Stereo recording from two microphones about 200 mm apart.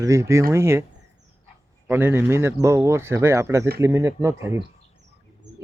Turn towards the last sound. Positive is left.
turn(degrees=-15)  # may be behind; listen again after turning